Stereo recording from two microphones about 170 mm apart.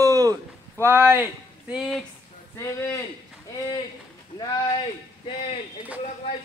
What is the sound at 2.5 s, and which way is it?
Speech, 15° left (ahead or behind).